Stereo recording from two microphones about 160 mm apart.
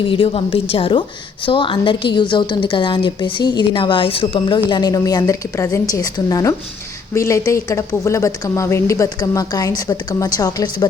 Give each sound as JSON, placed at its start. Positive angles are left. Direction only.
{"t": 0.0, "sound": "a woman's voice", "side_deg": 35}